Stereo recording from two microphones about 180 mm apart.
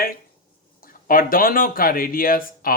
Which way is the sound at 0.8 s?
50° left (ahead or behind).